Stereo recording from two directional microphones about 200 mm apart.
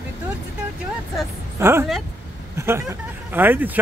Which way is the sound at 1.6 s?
10° right (ahead or behind).